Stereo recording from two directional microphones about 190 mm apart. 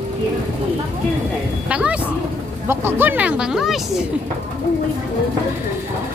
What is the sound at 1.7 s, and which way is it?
A woman's voice, 5° right (ahead or behind).